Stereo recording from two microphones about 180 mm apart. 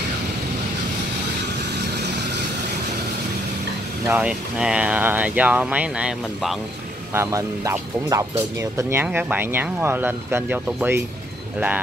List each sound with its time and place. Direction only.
4.1 s speech: 5° right (ahead or behind)
7.2 s speech: 15° right (ahead or behind)